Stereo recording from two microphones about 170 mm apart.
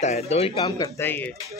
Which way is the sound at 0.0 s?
40° left (ahead or behind).